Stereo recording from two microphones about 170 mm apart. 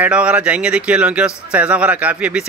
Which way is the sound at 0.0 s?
5° right (ahead or behind).